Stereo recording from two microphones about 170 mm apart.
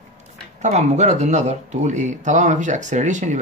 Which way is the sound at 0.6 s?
40° right (ahead or behind).